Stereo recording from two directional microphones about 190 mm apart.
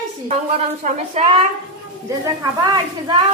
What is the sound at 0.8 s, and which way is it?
Speech, 40° right (ahead or behind).